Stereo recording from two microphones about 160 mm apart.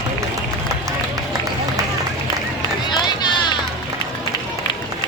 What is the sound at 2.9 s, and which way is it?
Run, 25° left (ahead or behind).